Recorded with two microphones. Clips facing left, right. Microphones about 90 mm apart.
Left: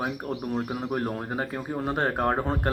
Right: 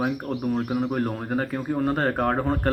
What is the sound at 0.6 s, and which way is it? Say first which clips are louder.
Speech: right 4 dB; 15° left (ahead or behind).